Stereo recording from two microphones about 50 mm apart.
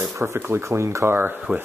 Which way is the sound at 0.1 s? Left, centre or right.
Right.